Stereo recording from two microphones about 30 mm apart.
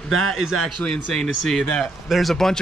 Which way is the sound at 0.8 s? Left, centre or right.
Left.